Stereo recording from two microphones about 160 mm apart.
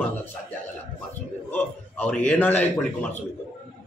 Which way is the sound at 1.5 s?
10° left (ahead or behind).